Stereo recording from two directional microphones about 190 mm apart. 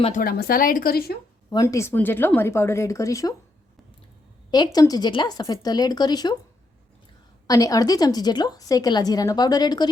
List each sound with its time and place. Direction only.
0.0 s speech: 45° left (ahead or behind)
1.5 s speech: 15° left (ahead or behind)
4.5 s a woman's voice: 20° left (ahead or behind)
7.4 s a woman's voice: 20° left (ahead or behind)